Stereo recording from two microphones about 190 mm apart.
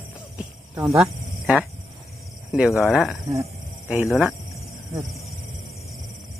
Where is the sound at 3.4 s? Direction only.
10° right (ahead or behind).